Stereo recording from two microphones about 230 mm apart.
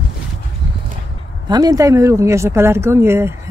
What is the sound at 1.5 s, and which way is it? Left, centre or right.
Speech, centre.